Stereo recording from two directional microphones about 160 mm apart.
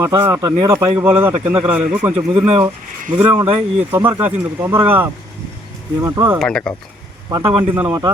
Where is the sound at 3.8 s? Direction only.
15° right (ahead or behind).